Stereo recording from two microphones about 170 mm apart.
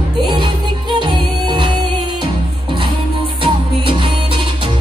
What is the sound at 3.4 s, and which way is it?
Music, 30° right (ahead or behind).